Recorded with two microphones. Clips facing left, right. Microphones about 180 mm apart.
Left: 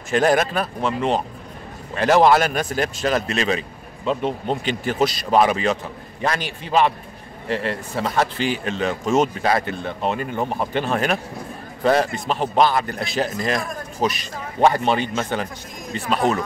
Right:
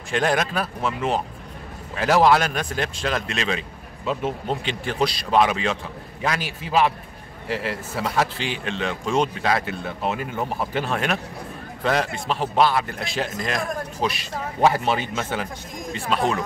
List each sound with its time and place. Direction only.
0.1 s speech: 5° left (ahead or behind)
9.0 s speech: 45° left (ahead or behind)
9.4 s speech: centre (ahead or behind)